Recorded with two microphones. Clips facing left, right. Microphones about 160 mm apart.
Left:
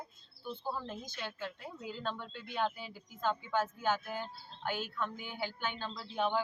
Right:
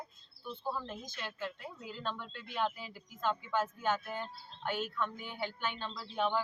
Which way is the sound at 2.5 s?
5° left (ahead or behind).